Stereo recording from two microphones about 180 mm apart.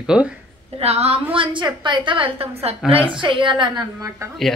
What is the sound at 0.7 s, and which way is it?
A woman's voice, 35° right (ahead or behind).